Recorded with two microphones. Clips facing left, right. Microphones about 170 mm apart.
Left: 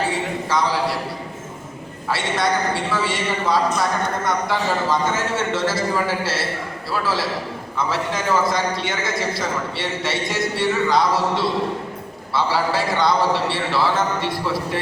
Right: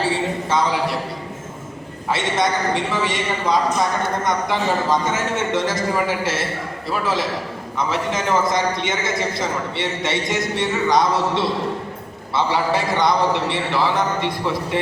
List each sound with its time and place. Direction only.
0.5 s a man's voice: 25° right (ahead or behind)
2.0 s a man's voice: 20° right (ahead or behind)